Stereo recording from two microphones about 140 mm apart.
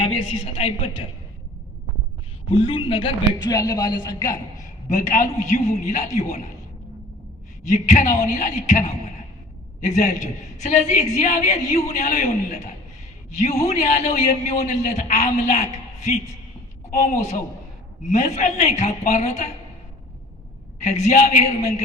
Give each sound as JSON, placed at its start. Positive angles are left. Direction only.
{"t": 0.0, "sound": "a woman's voice", "side_deg": 40}
{"t": 2.5, "sound": "a woman's voice", "side_deg": 40}
{"t": 3.5, "sound": "a man's voice", "side_deg": 25}
{"t": 4.9, "sound": "a man's voice", "side_deg": 65}
{"t": 7.6, "sound": "a man's voice", "side_deg": 60}
{"t": 20.8, "sound": "a man's voice", "side_deg": 55}